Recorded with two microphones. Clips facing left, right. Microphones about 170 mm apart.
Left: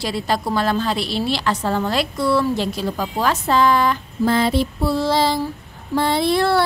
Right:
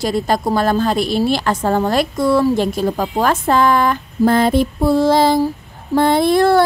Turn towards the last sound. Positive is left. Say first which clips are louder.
# right 5 dB
turn(degrees=-45)  # may be behind; listen again after turning